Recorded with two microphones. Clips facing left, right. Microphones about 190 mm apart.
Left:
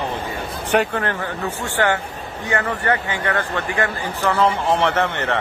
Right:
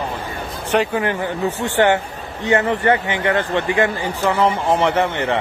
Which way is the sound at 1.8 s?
20° right (ahead or behind).